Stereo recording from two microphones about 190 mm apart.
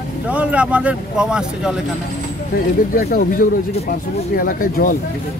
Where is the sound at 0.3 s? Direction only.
5° right (ahead or behind).